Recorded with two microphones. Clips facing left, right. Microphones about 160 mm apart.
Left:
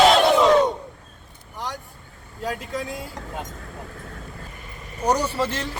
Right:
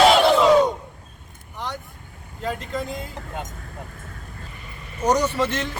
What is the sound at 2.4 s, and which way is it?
Speech, 5° left (ahead or behind).